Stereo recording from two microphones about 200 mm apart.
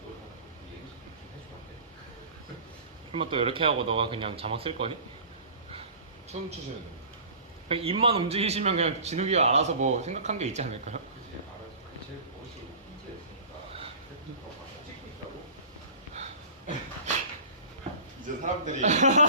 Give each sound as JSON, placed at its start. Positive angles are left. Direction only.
{"t": 3.1, "sound": "speech", "side_deg": -25}
{"t": 6.3, "sound": "a man's voice", "side_deg": -35}
{"t": 7.7, "sound": "a man's voice", "side_deg": -30}
{"t": 16.1, "sound": "dog", "side_deg": -35}
{"t": 18.4, "sound": "a man's voice", "side_deg": -35}